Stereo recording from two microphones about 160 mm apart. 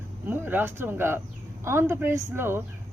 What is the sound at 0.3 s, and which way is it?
A woman's voice, 10° right (ahead or behind).